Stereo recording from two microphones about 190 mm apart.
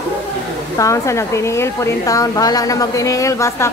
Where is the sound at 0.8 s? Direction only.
15° left (ahead or behind).